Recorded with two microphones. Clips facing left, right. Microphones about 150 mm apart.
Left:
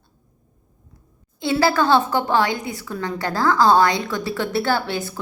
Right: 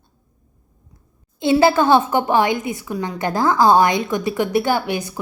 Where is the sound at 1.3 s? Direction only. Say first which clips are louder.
Right 4 dB; 20° right (ahead or behind).